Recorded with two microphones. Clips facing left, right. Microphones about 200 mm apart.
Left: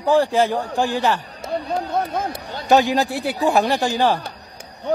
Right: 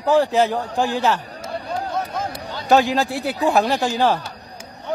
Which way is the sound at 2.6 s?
Centre (ahead or behind).